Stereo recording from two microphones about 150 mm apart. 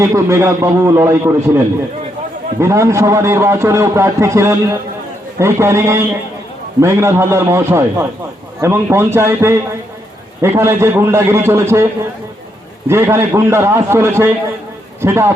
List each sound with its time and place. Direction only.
0.0 s a man's voice: 20° right (ahead or behind)
12.9 s a man's voice: 15° right (ahead or behind)